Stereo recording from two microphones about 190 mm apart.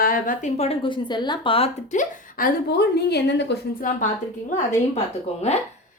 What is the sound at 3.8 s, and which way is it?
Speech, 45° left (ahead or behind).